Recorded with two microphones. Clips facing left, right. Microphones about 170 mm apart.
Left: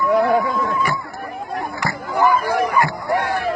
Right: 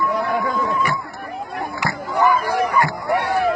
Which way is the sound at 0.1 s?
50° left (ahead or behind).